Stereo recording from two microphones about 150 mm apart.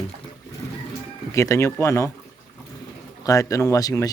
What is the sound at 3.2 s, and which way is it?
Speech, 20° left (ahead or behind).